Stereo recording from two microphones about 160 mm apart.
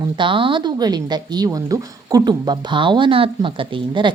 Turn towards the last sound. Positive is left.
turn(degrees=-30)  # may be behind; listen again after turning